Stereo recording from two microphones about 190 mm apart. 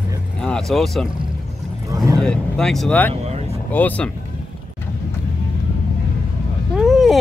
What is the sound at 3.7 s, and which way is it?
Speech, 10° left (ahead or behind).